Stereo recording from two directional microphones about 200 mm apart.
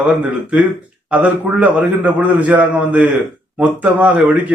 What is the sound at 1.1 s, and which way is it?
A man's voice, 5° right (ahead or behind).